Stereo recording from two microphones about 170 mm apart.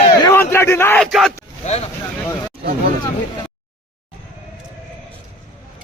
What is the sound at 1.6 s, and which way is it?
Speech, 40° left (ahead or behind).